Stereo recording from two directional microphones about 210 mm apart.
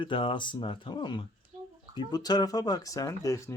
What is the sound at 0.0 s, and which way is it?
Speech, 25° left (ahead or behind).